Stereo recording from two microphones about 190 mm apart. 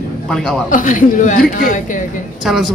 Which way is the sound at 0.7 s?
45° left (ahead or behind).